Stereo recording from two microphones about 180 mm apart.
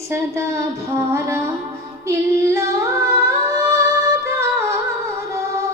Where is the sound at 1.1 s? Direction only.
15° right (ahead or behind).